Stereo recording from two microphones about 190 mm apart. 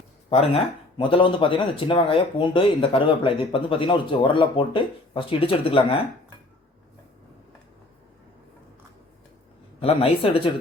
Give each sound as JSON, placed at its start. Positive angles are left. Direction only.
{"t": 0.3, "sound": "speech", "side_deg": 30}
{"t": 9.8, "sound": "speech", "side_deg": 30}